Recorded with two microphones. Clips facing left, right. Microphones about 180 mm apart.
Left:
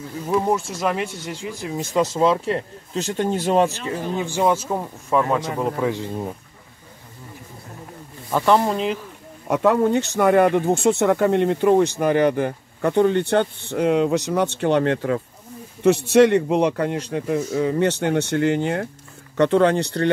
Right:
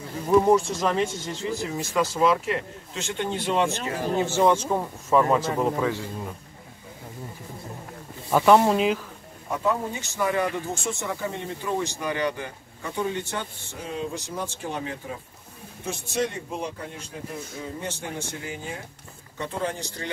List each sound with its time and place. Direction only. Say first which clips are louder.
0.3 s speech: right 3 dB; centre (ahead or behind); by 3.8 s 40° left (ahead or behind)
4.2 s speech: even; 10° left (ahead or behind)
5.8 s speech: left 3 dB; 15° left (ahead or behind)
8.3 s speech: right 1 dB; centre (ahead or behind)
9.5 s speech: left 9 dB; 75° left (ahead or behind)